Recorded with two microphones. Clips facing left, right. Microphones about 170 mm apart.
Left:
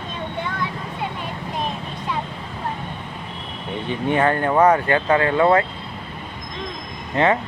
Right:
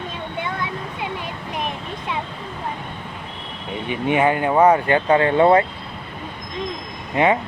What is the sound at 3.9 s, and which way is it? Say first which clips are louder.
Speech: right 1 dB; 15° right (ahead or behind).